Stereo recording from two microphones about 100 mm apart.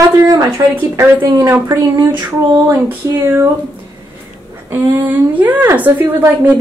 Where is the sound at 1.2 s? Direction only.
30° right (ahead or behind).